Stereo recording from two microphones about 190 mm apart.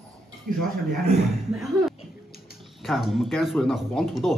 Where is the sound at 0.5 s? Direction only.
50° right (ahead or behind).